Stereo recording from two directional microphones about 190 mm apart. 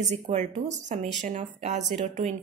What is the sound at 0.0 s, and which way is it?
A woman's voice, 35° right (ahead or behind).